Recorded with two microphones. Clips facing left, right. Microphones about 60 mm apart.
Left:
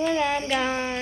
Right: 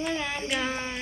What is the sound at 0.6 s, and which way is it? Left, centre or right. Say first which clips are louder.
Speech: left 5 dB; centre.